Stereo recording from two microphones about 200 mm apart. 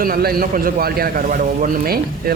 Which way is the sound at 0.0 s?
45° right (ahead or behind).